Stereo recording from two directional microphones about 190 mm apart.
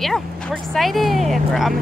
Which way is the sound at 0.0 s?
Centre (ahead or behind).